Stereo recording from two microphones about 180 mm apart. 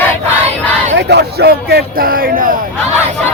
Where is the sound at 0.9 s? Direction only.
65° right (ahead or behind).